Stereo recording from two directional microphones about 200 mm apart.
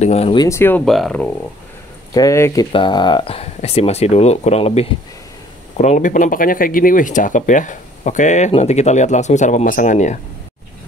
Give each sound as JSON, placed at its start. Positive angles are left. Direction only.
{"t": 0.0, "sound": "speech", "side_deg": 30}
{"t": 0.5, "sound": "speech", "side_deg": 10}
{"t": 2.1, "sound": "speech", "side_deg": 15}